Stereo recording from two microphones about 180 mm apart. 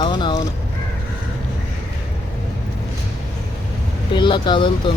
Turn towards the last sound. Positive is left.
turn(degrees=25)  # may be behind; listen again after turning